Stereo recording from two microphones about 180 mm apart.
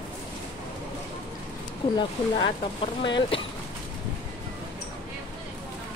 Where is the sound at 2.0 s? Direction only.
25° left (ahead or behind).